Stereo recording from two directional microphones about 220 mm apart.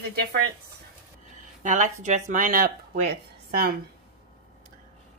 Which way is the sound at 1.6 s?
35° right (ahead or behind).